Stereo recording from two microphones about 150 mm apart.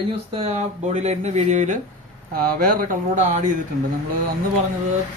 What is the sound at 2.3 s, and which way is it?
Speech, 70° right (ahead or behind).